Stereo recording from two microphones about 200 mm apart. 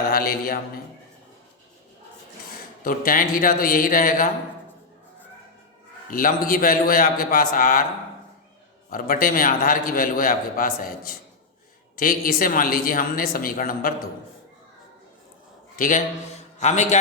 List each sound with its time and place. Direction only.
0.1 s a man's voice: 45° left (ahead or behind)
2.8 s a man's voice: 45° left (ahead or behind)
6.1 s a man's voice: 45° left (ahead or behind)
8.9 s a man's voice: 45° left (ahead or behind)
15.7 s a man's voice: 40° left (ahead or behind)